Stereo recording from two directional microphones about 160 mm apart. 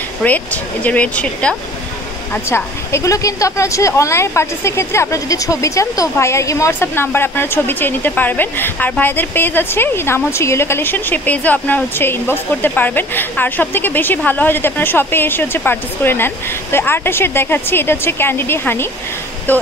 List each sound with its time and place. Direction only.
0.2 s a woman's voice: 10° left (ahead or behind)